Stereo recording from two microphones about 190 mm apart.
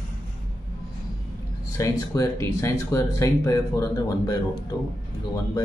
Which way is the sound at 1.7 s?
15° left (ahead or behind).